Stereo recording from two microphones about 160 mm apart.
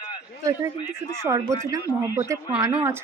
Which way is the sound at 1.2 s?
20° right (ahead or behind).